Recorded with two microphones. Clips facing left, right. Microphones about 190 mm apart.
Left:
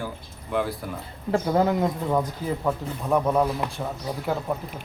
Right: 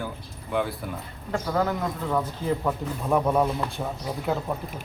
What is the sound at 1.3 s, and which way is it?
Speech, 25° left (ahead or behind).